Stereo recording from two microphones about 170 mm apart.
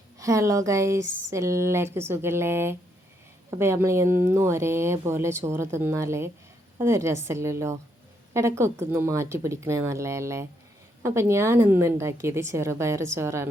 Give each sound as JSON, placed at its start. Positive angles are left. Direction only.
{"t": 0.2, "sound": "speech", "side_deg": -20}